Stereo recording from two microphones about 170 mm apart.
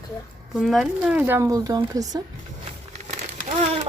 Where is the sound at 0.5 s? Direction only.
Centre (ahead or behind); by 2.0 s 20° right (ahead or behind).